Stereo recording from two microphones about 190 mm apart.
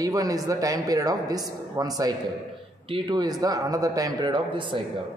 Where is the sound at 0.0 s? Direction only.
20° right (ahead or behind).